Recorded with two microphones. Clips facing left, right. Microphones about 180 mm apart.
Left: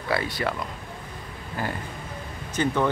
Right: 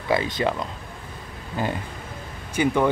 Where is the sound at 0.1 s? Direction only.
20° right (ahead or behind).